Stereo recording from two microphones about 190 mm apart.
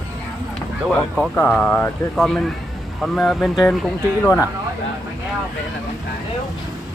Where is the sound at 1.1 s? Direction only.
5° left (ahead or behind).